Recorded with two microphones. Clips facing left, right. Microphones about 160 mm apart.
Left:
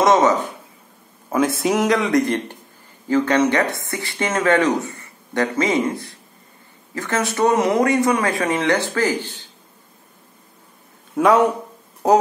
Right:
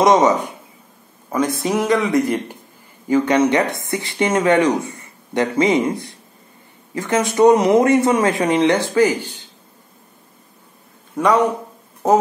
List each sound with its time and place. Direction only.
0.0 s speech: 15° right (ahead or behind)
1.3 s a man's voice: 5° left (ahead or behind); by 9.4 s 10° right (ahead or behind)
11.2 s a man's voice: centre (ahead or behind)